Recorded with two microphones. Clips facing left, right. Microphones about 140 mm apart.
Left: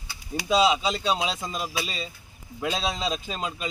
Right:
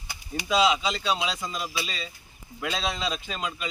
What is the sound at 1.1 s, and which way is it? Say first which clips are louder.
Speech: left 1 dB; 40° left (ahead or behind).